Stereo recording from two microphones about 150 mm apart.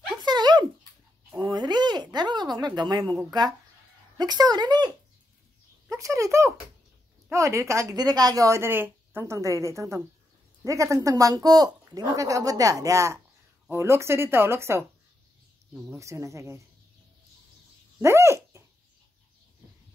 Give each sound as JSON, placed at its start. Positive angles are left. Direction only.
{"t": 0.2, "sound": "a sound", "side_deg": -30}
{"t": 4.2, "sound": "speech", "side_deg": -30}
{"t": 15.7, "sound": "speech", "side_deg": -5}
{"t": 16.0, "sound": "speech", "side_deg": -20}
{"t": 18.0, "sound": "dog", "side_deg": -20}